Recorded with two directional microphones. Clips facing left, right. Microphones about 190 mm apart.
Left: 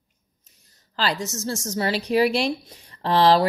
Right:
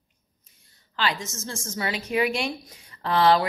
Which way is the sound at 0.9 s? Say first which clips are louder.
Left 3 dB; 35° left (ahead or behind).